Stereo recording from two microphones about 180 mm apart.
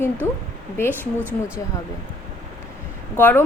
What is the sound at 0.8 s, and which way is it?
Speech, 10° right (ahead or behind).